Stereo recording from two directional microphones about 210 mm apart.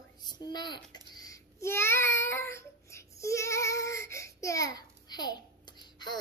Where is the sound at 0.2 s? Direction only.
20° left (ahead or behind).